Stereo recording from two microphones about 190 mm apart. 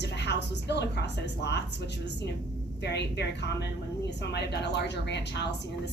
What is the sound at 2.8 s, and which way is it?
A woman's voice, 65° left (ahead or behind).